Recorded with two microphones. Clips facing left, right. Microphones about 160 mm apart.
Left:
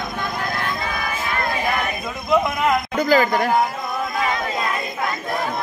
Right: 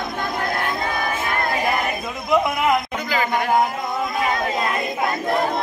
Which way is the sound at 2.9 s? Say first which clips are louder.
Left 7 dB; 40° left (ahead or behind).